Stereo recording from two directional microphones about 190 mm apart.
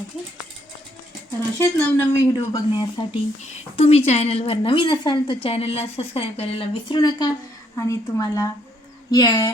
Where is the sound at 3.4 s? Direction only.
30° left (ahead or behind).